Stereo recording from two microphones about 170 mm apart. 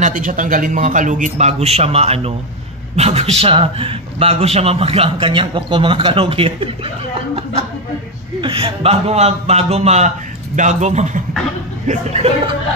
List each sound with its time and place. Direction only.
0.0 s a man's voice: 50° right (ahead or behind); by 6.9 s 35° right (ahead or behind)
8.4 s a man's voice: 30° right (ahead or behind)